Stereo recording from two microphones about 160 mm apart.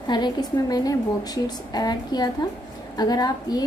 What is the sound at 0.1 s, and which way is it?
A woman's voice, 25° left (ahead or behind).